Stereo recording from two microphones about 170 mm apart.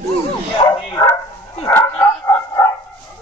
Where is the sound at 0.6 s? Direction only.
25° left (ahead or behind).